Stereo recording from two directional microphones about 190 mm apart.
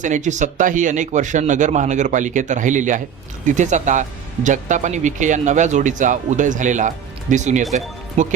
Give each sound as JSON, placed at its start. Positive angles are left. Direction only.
{"t": 0.0, "sound": "speech", "side_deg": -40}